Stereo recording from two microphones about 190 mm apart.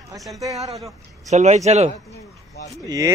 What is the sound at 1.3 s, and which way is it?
Speech, 35° right (ahead or behind).